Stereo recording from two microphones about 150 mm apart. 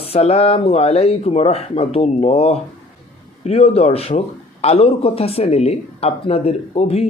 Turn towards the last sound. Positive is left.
turn(degrees=45)  # may be behind; listen again after turning